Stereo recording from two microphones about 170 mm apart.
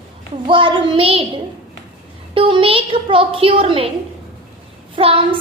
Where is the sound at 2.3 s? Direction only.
30° right (ahead or behind).